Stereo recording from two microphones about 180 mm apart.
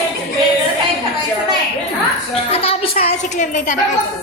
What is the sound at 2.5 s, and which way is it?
Speech, 30° left (ahead or behind).